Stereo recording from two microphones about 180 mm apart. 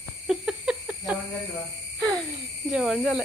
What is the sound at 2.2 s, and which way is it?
Speech, centre (ahead or behind).